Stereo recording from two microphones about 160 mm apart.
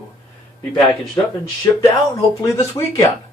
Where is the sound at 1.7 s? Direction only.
20° left (ahead or behind).